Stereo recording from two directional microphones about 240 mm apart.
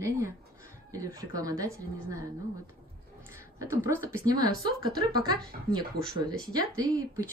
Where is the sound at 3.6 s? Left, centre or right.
Centre.